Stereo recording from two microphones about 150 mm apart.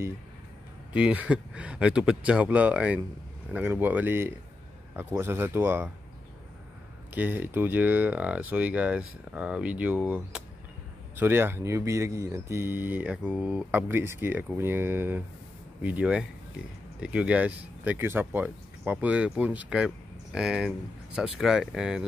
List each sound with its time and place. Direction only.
0.9 s speech: 10° right (ahead or behind)
7.2 s speech: 15° right (ahead or behind)